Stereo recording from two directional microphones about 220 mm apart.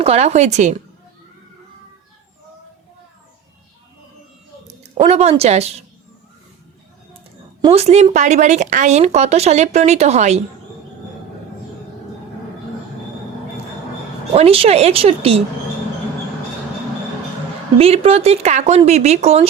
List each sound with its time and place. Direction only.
0.0 s speech: 30° right (ahead or behind)
4.9 s speech: 30° right (ahead or behind)
7.6 s speech: 25° right (ahead or behind)
14.3 s speech: 25° right (ahead or behind)
17.7 s speech: 25° right (ahead or behind)